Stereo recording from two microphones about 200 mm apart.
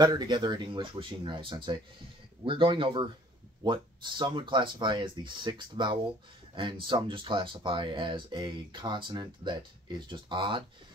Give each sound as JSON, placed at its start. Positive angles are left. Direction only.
{"t": 0.0, "sound": "speech", "side_deg": -20}